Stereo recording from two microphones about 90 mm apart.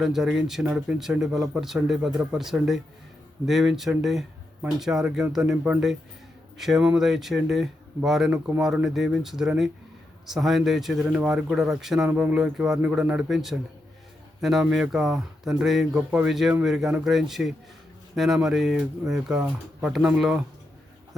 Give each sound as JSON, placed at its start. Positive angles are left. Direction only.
{"t": 0.0, "sound": "speech", "side_deg": -5}
{"t": 8.3, "sound": "speech", "side_deg": -15}
{"t": 8.6, "sound": "speech", "side_deg": -5}
{"t": 11.0, "sound": "speech", "side_deg": -15}
{"t": 12.0, "sound": "speech", "side_deg": -15}